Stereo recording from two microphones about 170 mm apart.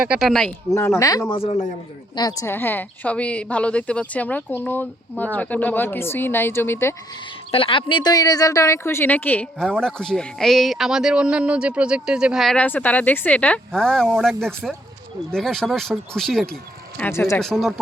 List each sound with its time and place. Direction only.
0.0 s a man's voice: 5° right (ahead or behind)
0.7 s a woman's voice: 15° left (ahead or behind)
1.4 s a man's voice: 40° left (ahead or behind)
2.1 s a woman's voice: 20° left (ahead or behind)
7.5 s a woman's voice: 30° left (ahead or behind); by 16.5 s centre (ahead or behind)
17.0 s a woman's voice: 15° left (ahead or behind)
17.4 s a man's voice: centre (ahead or behind)